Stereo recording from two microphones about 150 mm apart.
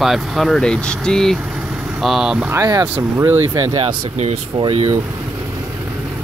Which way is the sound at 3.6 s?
40° right (ahead or behind).